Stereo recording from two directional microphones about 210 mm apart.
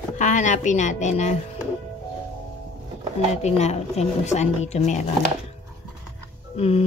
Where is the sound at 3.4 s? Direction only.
30° left (ahead or behind).